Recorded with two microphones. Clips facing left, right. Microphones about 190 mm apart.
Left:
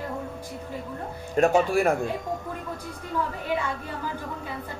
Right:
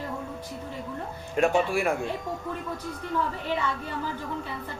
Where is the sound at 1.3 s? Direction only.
40° left (ahead or behind).